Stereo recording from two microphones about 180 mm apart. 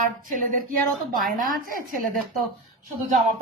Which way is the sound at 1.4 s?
50° right (ahead or behind).